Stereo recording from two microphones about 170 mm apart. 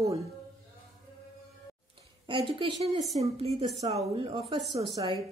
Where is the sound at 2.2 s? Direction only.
30° right (ahead or behind).